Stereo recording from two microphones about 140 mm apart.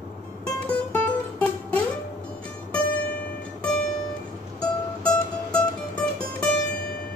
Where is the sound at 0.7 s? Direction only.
10° left (ahead or behind).